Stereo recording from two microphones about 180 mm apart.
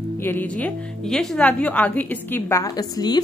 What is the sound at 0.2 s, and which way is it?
A woman's voice, 10° left (ahead or behind).